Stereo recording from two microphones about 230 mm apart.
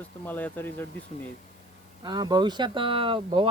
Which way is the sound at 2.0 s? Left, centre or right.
Centre.